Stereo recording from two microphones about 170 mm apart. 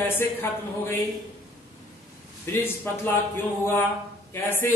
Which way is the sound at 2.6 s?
10° left (ahead or behind).